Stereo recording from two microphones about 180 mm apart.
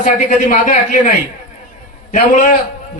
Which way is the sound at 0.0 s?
45° left (ahead or behind).